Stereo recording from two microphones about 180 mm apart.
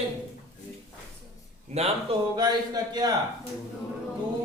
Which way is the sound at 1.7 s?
35° right (ahead or behind).